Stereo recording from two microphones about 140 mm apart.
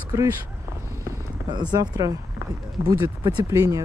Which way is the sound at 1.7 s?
25° right (ahead or behind).